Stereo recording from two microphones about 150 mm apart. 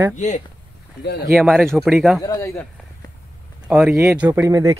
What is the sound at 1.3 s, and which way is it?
Speech, 10° right (ahead or behind).